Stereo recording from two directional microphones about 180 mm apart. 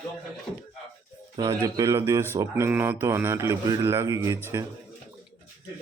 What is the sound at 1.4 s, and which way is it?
Speech, 20° right (ahead or behind).